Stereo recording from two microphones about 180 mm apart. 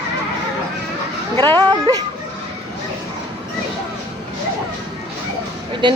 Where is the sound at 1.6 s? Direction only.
20° right (ahead or behind).